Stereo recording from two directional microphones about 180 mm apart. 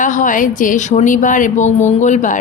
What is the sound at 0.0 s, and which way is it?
Speech, 45° left (ahead or behind).